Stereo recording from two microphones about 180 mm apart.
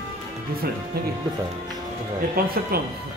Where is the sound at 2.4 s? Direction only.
55° right (ahead or behind).